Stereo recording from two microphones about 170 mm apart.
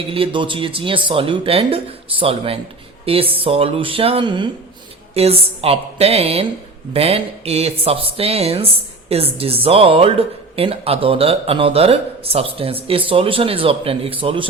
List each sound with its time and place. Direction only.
0.1 s speech: 30° right (ahead or behind)